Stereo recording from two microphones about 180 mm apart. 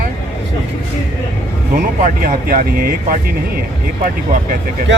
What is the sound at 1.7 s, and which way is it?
Speech, 45° right (ahead or behind).